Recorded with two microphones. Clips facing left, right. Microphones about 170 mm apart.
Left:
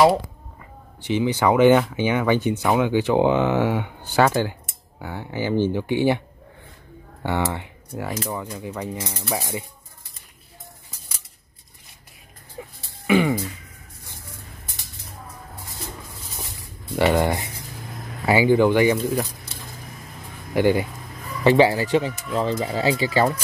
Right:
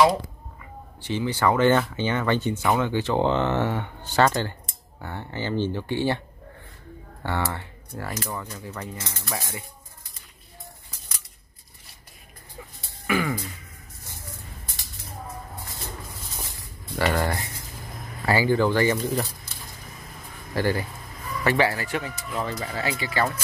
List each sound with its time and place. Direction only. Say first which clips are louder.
1.0 s speech: left 4 dB; 15° left (ahead or behind)
7.2 s speech: left 4 dB; 15° left (ahead or behind)
12.5 s a sound: left 6 dB; 20° left (ahead or behind)
16.9 s speech: left 5 dB; 15° left (ahead or behind)
20.5 s speech: left 6 dB; 15° left (ahead or behind)